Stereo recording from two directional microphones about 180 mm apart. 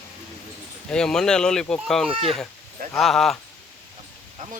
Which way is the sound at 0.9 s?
5° left (ahead or behind).